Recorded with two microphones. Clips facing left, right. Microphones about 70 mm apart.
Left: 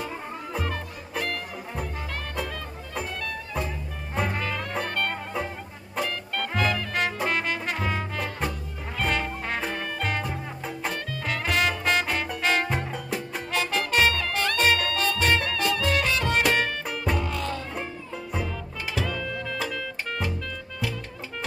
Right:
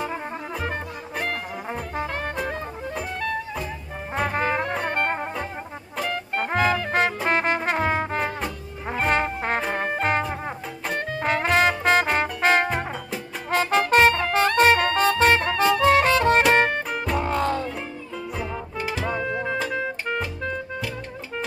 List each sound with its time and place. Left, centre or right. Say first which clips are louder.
0.7 s music: right 3 dB; right
4.3 s music: right 6 dB; right
6.3 s music: right 5 dB; right
7.2 s brass instrument: right 5 dB; right
8.9 s music: right 5 dB; right
18.4 s music: right 4 dB; centre
19.0 s music: right 5 dB; right